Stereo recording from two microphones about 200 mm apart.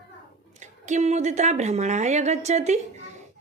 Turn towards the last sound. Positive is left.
turn(degrees=-35)  # may be behind; listen again after turning